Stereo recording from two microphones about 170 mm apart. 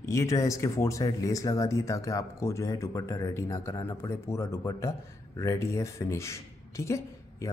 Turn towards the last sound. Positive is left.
turn(degrees=15)  # may be behind; listen again after turning